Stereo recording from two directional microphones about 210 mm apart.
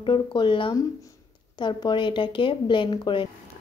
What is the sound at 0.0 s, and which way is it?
A woman's voice, 25° left (ahead or behind).